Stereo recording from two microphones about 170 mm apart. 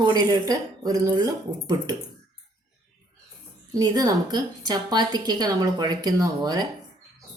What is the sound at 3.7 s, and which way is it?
Speech, 20° right (ahead or behind).